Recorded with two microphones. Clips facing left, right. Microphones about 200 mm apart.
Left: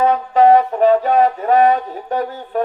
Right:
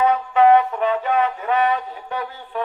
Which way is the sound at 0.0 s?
40° left (ahead or behind).